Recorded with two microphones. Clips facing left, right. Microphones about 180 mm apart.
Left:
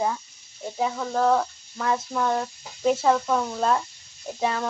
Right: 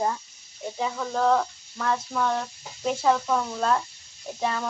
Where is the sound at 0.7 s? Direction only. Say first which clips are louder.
Left 3 dB; 5° left (ahead or behind).